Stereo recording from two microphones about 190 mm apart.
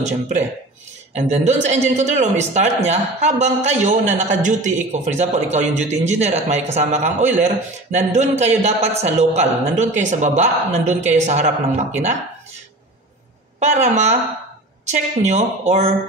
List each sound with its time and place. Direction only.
1.1 s a man's voice: 35° right (ahead or behind)
13.6 s a man's voice: 40° right (ahead or behind)